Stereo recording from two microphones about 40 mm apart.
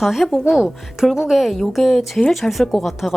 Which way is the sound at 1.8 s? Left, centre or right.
Centre.